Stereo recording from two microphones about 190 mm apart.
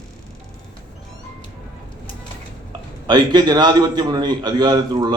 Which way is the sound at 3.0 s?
20° right (ahead or behind).